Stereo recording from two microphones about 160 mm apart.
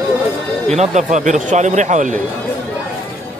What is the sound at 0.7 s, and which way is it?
A man's voice, 45° right (ahead or behind).